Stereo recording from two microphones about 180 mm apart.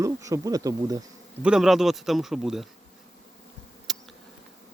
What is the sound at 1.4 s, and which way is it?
Speech, 5° right (ahead or behind).